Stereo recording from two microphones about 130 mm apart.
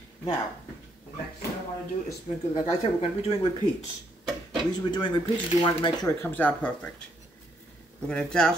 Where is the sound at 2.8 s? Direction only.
50° left (ahead or behind).